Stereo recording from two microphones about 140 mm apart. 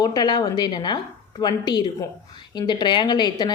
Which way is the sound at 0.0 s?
30° left (ahead or behind).